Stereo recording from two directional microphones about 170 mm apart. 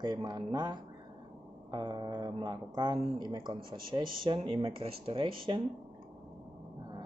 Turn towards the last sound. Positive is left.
turn(degrees=-35)  # may be behind; listen again after turning